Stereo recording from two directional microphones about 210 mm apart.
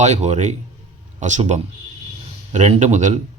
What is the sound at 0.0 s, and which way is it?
A man's voice, 35° right (ahead or behind).